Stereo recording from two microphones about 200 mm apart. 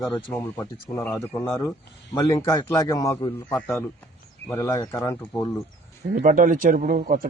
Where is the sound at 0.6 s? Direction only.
15° left (ahead or behind).